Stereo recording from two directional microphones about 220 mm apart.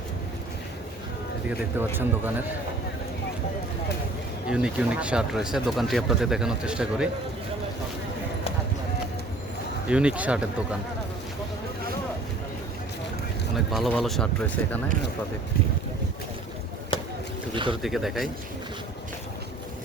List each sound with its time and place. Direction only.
1.5 s speech: 10° right (ahead or behind)
4.4 s speech: 5° right (ahead or behind)
9.9 s speech: 5° right (ahead or behind)
13.6 s speech: centre (ahead or behind)
16.9 s a sound: 20° left (ahead or behind)
17.5 s speech: 20° right (ahead or behind)
17.8 s speech: centre (ahead or behind)